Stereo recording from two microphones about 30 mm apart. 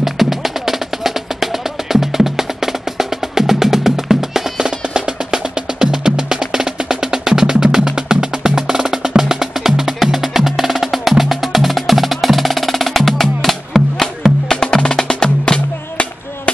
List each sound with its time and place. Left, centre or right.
0.0 s music: centre
4.8 s music: right
9.3 s percussion: centre
14.5 s music: left